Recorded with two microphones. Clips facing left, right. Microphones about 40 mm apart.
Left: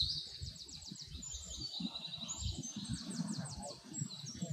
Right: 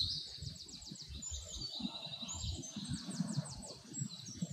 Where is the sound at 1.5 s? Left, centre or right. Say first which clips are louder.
Even; right.